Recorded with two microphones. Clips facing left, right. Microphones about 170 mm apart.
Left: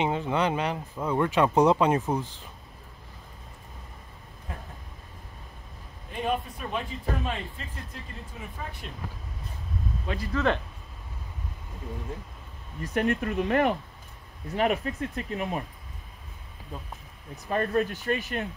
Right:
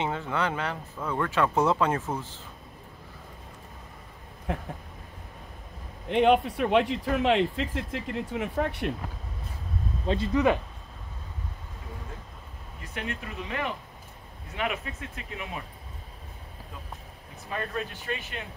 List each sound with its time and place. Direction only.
0.0 s speech: 15° left (ahead or behind)
4.5 s a man's voice: 70° right (ahead or behind)
6.0 s a man's voice: 70° right (ahead or behind)
10.0 s speech: 25° right (ahead or behind)
12.8 s speech: 45° left (ahead or behind)
14.5 s speech: 40° left (ahead or behind)
17.5 s speech: 45° left (ahead or behind)